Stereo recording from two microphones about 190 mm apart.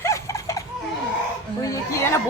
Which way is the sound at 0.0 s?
15° left (ahead or behind).